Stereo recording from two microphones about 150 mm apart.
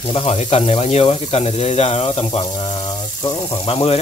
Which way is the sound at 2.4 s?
30° left (ahead or behind).